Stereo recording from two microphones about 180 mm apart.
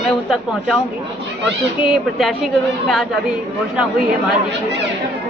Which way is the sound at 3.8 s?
5° right (ahead or behind).